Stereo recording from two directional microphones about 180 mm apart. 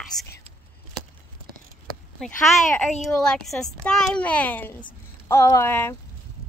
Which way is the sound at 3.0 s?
5° left (ahead or behind).